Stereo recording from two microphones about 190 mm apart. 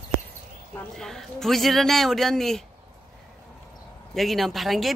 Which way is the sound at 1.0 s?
Centre (ahead or behind).